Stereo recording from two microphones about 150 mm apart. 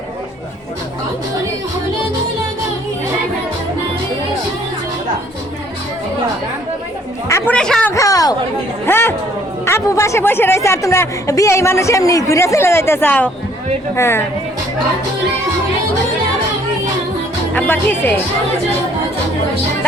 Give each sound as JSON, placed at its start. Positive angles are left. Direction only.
{"t": 7.3, "sound": "chatter", "side_deg": 20}
{"t": 7.5, "sound": "speech", "side_deg": 5}
{"t": 7.9, "sound": "speech", "side_deg": 25}
{"t": 17.5, "sound": "speech", "side_deg": 10}